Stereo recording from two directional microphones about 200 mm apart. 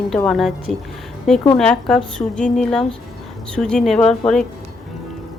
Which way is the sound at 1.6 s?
5° left (ahead or behind).